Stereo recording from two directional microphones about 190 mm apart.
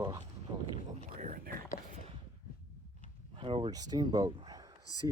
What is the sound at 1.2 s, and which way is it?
Speech, 45° right (ahead or behind).